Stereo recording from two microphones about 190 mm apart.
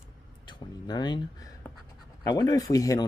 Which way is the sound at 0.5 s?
20° left (ahead or behind).